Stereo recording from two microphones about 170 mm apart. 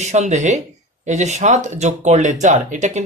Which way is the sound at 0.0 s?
45° right (ahead or behind).